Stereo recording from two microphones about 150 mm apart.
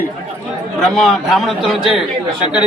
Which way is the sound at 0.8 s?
5° left (ahead or behind).